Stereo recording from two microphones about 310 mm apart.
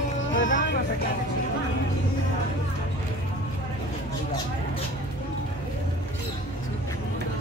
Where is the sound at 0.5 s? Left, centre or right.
Left.